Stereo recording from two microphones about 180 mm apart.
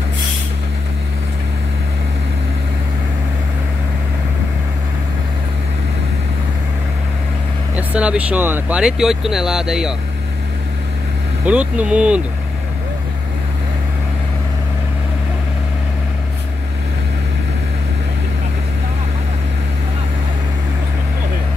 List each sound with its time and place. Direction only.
7.7 s speech: 5° right (ahead or behind)
11.4 s speech: 5° right (ahead or behind)